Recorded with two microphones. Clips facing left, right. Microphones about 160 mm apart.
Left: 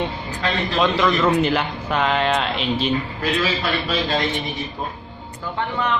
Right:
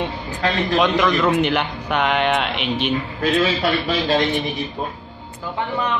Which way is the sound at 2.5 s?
65° right (ahead or behind).